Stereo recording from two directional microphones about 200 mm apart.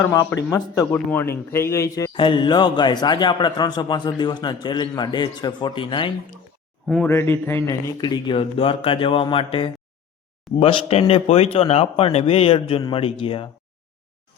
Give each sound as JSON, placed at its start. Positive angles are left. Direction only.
{"t": 0.0, "sound": "a man's voice", "side_deg": 15}
{"t": 6.8, "sound": "speech", "side_deg": 0}
{"t": 7.1, "sound": "a man's voice", "side_deg": 10}